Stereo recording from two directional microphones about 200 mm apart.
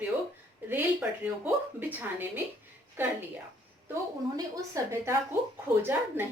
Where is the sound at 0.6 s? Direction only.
10° right (ahead or behind).